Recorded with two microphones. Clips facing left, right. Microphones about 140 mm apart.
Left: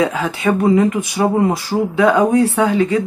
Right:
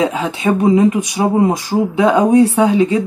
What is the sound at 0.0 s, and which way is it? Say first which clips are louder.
Speech: right 1 dB; 20° right (ahead or behind).